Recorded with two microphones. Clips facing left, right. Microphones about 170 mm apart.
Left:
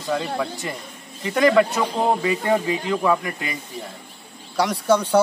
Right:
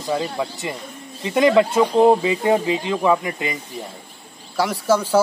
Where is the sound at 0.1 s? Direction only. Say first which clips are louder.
Right 1 dB; 15° right (ahead or behind).